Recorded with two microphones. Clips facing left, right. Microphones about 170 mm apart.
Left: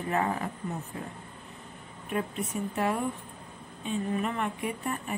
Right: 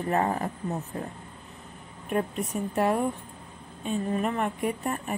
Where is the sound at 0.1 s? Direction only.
40° right (ahead or behind).